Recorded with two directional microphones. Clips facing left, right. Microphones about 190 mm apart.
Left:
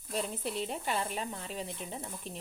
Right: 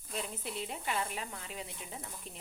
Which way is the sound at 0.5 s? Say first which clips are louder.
Left 1 dB; 35° left (ahead or behind).